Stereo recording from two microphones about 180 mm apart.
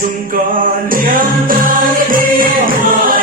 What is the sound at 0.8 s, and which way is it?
Music, 50° right (ahead or behind).